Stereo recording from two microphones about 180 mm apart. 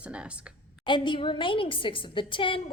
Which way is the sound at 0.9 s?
25° left (ahead or behind).